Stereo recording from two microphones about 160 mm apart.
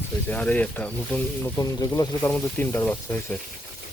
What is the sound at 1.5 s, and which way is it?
Speech, 20° left (ahead or behind).